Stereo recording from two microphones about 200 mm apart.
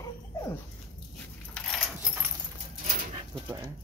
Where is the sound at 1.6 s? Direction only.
Centre (ahead or behind).